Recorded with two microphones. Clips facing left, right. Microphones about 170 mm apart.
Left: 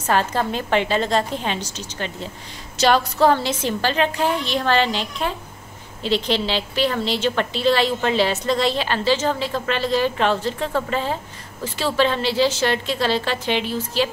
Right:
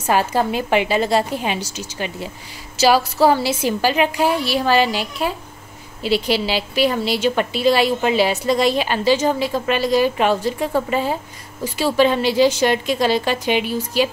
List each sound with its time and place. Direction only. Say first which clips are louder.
0.0 s a woman's voice: right 3 dB; 10° right (ahead or behind)